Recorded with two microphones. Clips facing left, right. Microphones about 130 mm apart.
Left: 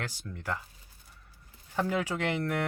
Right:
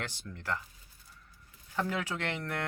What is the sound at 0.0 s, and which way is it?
Speech, 10° left (ahead or behind).